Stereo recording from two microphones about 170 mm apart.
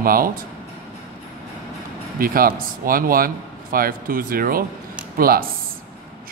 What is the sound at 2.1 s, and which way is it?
Speech, 60° right (ahead or behind).